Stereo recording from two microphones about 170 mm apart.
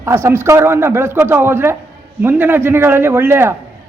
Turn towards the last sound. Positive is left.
turn(degrees=-15)  # may be behind; listen again after turning